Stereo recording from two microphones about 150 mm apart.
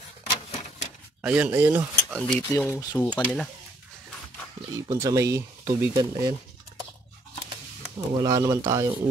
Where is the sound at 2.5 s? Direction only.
10° left (ahead or behind).